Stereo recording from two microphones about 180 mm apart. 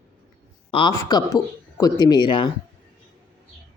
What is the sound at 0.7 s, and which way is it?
A man's voice, 30° left (ahead or behind).